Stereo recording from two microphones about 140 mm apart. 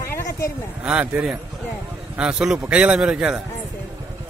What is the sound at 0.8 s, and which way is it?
A man's voice, 10° right (ahead or behind).